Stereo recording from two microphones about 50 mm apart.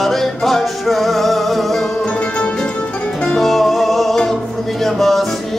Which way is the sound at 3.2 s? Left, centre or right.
Centre.